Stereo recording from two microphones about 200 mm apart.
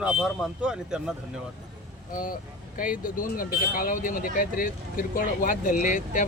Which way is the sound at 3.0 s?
45° left (ahead or behind).